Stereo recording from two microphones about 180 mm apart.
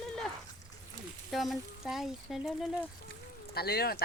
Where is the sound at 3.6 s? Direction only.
60° left (ahead or behind).